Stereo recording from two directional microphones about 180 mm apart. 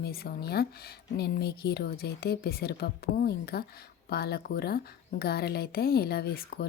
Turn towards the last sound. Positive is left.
turn(degrees=60)  # may be behind; listen again after turning